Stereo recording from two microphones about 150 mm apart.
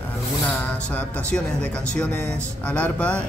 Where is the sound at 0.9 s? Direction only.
10° left (ahead or behind).